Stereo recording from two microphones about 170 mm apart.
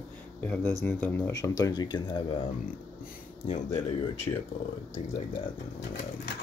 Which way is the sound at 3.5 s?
45° left (ahead or behind).